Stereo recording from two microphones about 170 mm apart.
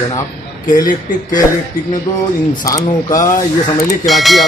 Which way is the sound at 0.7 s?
50° left (ahead or behind).